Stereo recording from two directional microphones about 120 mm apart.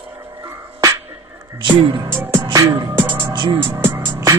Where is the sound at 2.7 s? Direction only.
40° right (ahead or behind).